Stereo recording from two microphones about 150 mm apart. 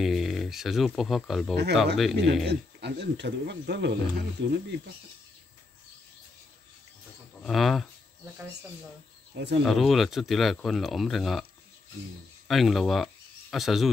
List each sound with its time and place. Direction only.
0.0 s speech: centre (ahead or behind)
2.4 s speech: 90° right
7.4 s speech: centre (ahead or behind)
9.3 s speech: 90° right
9.7 s speech: centre (ahead or behind)
12.4 s speech: centre (ahead or behind)